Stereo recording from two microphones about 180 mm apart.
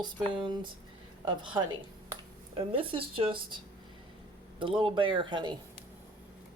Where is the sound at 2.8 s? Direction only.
30° right (ahead or behind).